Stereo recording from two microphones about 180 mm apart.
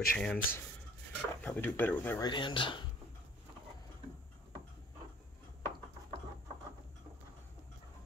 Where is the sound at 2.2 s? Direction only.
25° left (ahead or behind).